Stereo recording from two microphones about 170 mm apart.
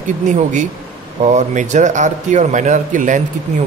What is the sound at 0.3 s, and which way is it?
Speech, 45° right (ahead or behind).